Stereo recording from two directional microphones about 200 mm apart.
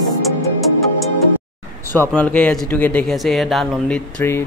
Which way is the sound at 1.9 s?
10° left (ahead or behind).